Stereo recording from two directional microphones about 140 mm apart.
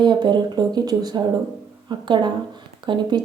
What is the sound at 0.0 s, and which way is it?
Speech, 35° right (ahead or behind).